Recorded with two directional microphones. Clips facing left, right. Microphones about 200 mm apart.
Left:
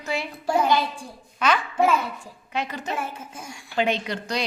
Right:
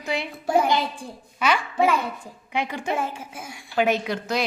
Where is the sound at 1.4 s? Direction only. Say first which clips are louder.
Even; 10° right (ahead or behind).